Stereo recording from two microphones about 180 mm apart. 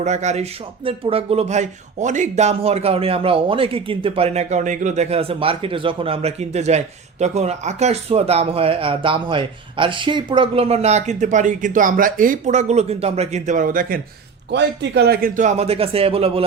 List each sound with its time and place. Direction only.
0.0 s speech: 40° right (ahead or behind)
14.5 s speech: 70° right (ahead or behind); by 16.4 s 30° right (ahead or behind)